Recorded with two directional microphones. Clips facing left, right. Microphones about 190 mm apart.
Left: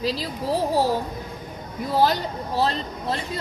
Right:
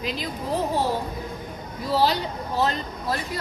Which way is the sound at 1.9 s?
50° left (ahead or behind).